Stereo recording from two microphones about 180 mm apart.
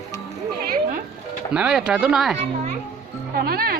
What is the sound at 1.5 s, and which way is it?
Speech, 5° right (ahead or behind).